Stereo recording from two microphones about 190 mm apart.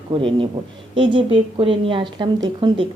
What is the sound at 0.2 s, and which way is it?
A woman's voice, 25° right (ahead or behind).